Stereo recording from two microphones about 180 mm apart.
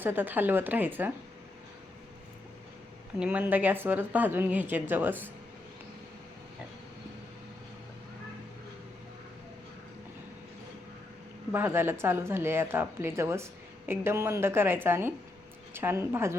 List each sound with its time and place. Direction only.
0.0 s a woman's voice: 10° right (ahead or behind)
3.2 s a woman's voice: 10° right (ahead or behind)
11.5 s a woman's voice: 10° right (ahead or behind)